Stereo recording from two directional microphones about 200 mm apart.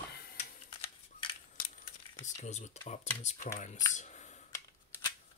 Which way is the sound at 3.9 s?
35° left (ahead or behind).